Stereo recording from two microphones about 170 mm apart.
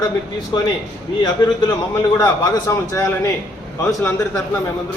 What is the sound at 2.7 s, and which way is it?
Speech, 20° left (ahead or behind).